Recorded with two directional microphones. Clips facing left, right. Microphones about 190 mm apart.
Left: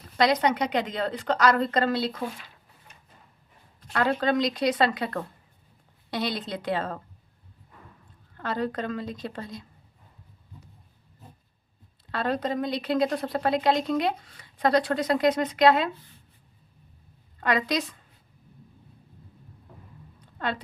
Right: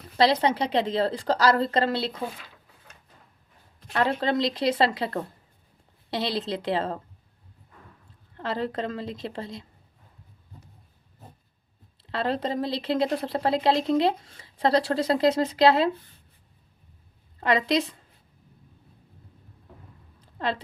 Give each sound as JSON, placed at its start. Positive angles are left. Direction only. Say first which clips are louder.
{"t": 0.2, "sound": "speech", "louder": "right 1 dB", "side_deg": -30}
{"t": 3.9, "sound": "speech", "louder": "even", "side_deg": -25}
{"t": 8.4, "sound": "speech", "louder": "even", "side_deg": -25}
{"t": 12.0, "sound": "speech", "louder": "even", "side_deg": -25}
{"t": 17.4, "sound": "speech", "louder": "right 3 dB", "side_deg": -25}
{"t": 20.4, "sound": "speech", "louder": "right 2 dB", "side_deg": -30}